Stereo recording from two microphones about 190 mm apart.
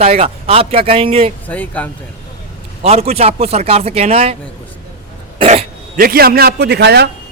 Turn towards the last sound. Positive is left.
turn(degrees=-60)  # may be behind; listen again after turning